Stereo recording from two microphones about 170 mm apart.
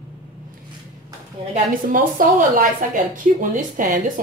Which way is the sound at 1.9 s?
55° right (ahead or behind).